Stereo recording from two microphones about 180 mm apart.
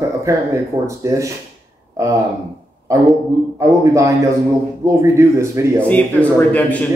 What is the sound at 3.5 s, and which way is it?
Speech, 15° right (ahead or behind).